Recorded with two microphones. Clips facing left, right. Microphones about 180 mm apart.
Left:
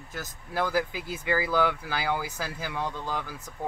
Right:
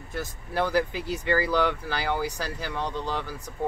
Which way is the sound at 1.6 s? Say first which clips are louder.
Right 1 dB; 10° left (ahead or behind).